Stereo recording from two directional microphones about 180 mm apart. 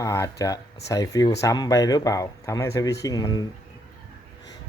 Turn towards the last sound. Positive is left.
turn(degrees=20)  # may be behind; listen again after turning